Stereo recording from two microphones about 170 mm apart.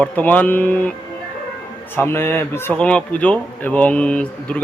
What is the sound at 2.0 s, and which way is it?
Speech, 15° left (ahead or behind).